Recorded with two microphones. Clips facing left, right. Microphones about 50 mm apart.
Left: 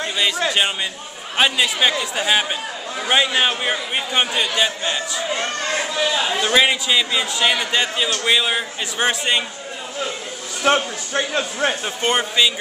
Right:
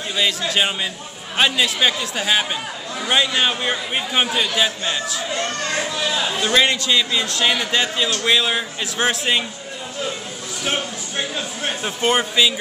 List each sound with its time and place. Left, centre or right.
0.5 s a man's voice: centre
5.9 s a man's voice: centre
6.4 s a man's voice: centre
10.6 s a man's voice: left
11.8 s a man's voice: centre